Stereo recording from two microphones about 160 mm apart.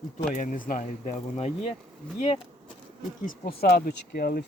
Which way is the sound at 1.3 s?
40° left (ahead or behind).